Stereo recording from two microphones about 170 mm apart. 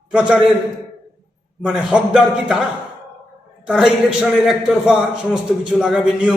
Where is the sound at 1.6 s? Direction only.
5° right (ahead or behind).